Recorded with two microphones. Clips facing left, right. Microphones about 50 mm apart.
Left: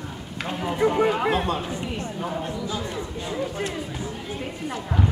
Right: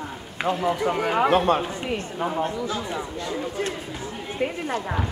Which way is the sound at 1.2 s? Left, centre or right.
Right.